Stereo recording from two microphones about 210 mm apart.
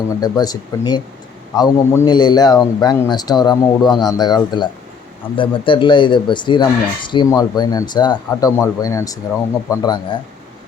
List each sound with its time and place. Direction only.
0.1 s a man's voice: 20° left (ahead or behind)